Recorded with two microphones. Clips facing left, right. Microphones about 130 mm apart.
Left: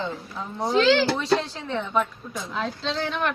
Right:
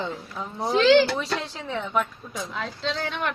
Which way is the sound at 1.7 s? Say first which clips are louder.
Left 1 dB; 5° right (ahead or behind).